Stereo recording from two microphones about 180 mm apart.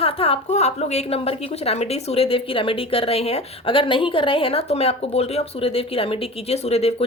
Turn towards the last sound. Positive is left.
turn(degrees=35)  # may be behind; listen again after turning